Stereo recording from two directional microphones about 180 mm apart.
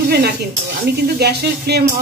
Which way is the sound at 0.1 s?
60° right (ahead or behind).